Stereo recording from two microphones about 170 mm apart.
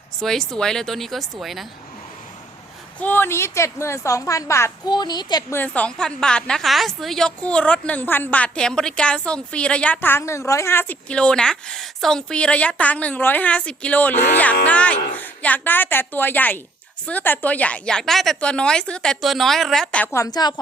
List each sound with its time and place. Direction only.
0.2 s a woman's voice: 5° left (ahead or behind)
3.0 s a woman's voice: 10° left (ahead or behind)
5.5 s a woman's voice: 10° left (ahead or behind)
20.1 s a woman's voice: 20° left (ahead or behind)